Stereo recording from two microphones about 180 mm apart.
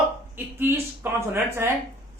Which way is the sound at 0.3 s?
10° right (ahead or behind).